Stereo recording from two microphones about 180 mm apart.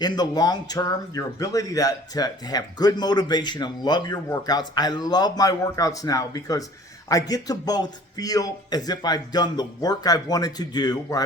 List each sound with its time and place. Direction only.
0.0 s speech: 20° left (ahead or behind)